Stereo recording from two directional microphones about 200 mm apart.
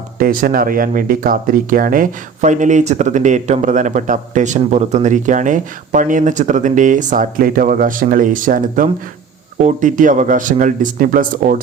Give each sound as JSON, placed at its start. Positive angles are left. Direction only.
{"t": 0.2, "sound": "speech", "side_deg": -45}